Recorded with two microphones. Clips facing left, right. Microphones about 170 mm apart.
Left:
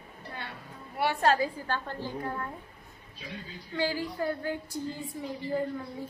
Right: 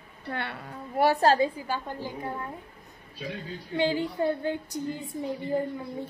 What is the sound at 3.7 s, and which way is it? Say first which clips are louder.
A woman's voice: right 4 dB; 20° right (ahead or behind).